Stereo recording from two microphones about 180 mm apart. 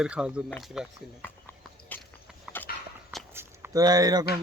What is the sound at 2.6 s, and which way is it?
Horse, 10° left (ahead or behind).